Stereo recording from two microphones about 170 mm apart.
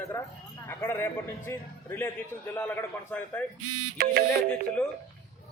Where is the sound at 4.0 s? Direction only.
55° right (ahead or behind).